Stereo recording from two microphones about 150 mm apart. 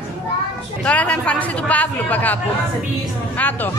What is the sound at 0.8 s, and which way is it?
A woman's voice, 10° left (ahead or behind).